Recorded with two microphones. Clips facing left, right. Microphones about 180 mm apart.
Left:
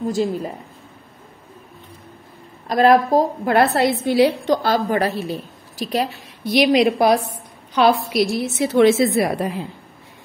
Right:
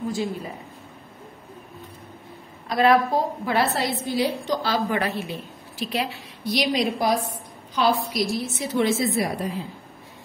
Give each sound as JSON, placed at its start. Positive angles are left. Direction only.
{"t": 0.1, "sound": "a woman's voice", "side_deg": 40}
{"t": 2.7, "sound": "a woman's voice", "side_deg": 40}
{"t": 4.6, "sound": "a woman's voice", "side_deg": 40}
{"t": 6.5, "sound": "a woman's voice", "side_deg": 70}